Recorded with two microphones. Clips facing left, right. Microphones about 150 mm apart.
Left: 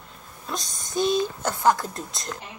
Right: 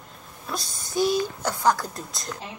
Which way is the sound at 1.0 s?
20° left (ahead or behind).